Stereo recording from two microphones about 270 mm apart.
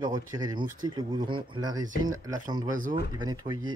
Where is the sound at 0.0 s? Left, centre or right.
Centre.